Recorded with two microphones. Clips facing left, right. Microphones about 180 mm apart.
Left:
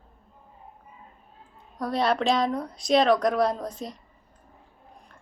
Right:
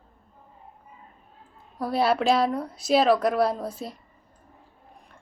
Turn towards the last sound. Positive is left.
turn(degrees=-5)  # may be behind; listen again after turning